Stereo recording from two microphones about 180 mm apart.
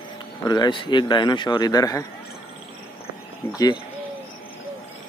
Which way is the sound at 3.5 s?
20° left (ahead or behind).